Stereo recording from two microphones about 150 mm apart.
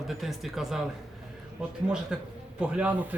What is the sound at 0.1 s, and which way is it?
A man's voice, centre (ahead or behind).